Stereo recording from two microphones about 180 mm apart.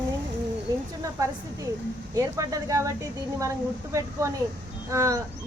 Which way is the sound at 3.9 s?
15° right (ahead or behind).